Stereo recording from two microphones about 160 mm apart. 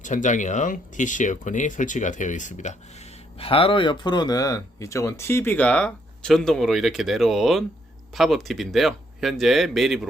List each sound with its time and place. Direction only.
0.0 s speech: 50° left (ahead or behind); by 10.1 s centre (ahead or behind)